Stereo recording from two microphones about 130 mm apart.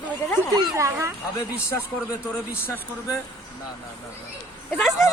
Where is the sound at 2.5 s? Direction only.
20° left (ahead or behind).